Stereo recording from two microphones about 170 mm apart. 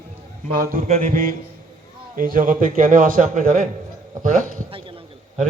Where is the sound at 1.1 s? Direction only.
55° right (ahead or behind).